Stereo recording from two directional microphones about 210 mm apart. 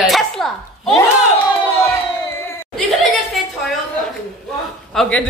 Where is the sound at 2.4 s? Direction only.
10° left (ahead or behind).